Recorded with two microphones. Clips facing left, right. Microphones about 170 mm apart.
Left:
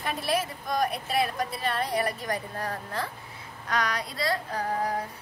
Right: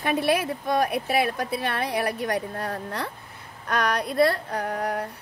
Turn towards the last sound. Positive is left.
turn(degrees=-70)  # may be behind; listen again after turning